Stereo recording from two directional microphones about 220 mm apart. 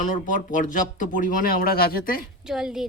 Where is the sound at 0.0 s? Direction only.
35° left (ahead or behind).